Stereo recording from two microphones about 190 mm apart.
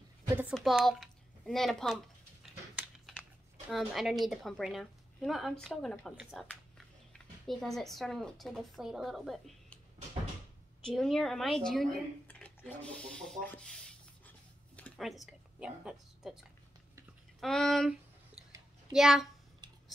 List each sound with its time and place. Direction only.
0.4 s speech: centre (ahead or behind)
3.7 s a woman's voice: centre (ahead or behind)
10.8 s speech: 5° left (ahead or behind)
14.8 s a sound: centre (ahead or behind)
17.4 s a woman's voice: centre (ahead or behind)